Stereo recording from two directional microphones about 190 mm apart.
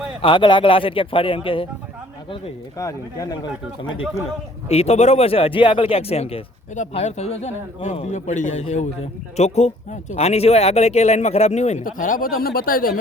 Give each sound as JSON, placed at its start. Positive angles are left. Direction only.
{"t": 0.2, "sound": "speech", "side_deg": 25}
{"t": 2.3, "sound": "speech", "side_deg": 15}
{"t": 4.7, "sound": "speech", "side_deg": 35}